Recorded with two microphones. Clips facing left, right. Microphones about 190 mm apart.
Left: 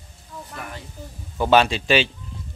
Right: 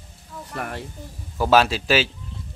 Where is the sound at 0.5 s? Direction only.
60° right (ahead or behind).